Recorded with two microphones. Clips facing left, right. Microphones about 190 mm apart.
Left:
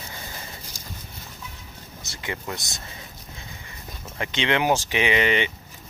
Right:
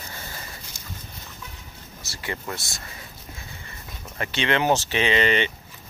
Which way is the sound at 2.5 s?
20° left (ahead or behind).